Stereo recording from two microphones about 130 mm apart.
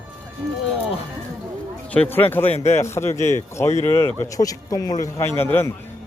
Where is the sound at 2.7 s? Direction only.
20° left (ahead or behind).